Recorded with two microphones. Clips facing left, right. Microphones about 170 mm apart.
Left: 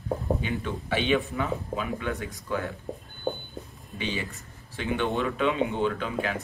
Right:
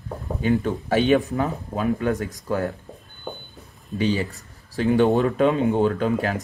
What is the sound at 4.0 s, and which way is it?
Speech, 40° right (ahead or behind).